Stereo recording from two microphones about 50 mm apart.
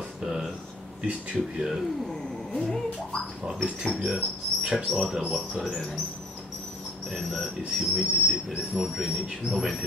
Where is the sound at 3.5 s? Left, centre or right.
Centre.